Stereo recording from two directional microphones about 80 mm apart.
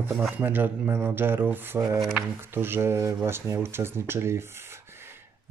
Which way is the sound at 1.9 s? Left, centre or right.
Centre.